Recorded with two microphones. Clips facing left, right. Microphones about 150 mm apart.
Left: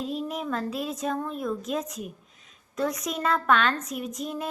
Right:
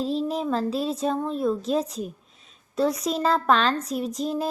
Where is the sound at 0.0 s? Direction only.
30° right (ahead or behind).